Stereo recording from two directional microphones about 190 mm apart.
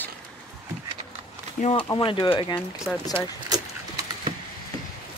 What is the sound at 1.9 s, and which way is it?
Speech, 20° left (ahead or behind).